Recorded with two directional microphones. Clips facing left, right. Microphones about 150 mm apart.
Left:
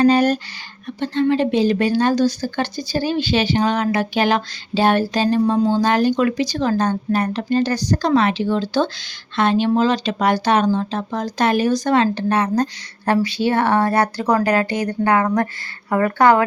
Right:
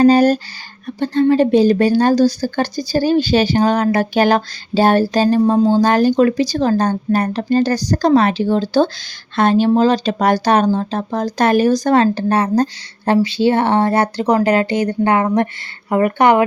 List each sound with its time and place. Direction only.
0.0 s speech: 35° right (ahead or behind); by 16.4 s 20° right (ahead or behind)